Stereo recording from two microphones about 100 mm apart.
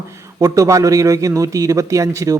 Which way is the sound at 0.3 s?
30° right (ahead or behind).